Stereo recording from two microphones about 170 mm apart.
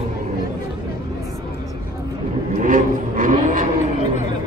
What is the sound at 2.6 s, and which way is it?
Vehicle, 50° right (ahead or behind).